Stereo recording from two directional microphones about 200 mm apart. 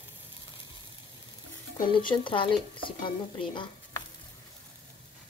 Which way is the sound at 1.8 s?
25° left (ahead or behind).